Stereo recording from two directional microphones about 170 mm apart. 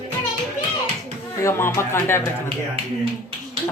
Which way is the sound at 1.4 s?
15° left (ahead or behind).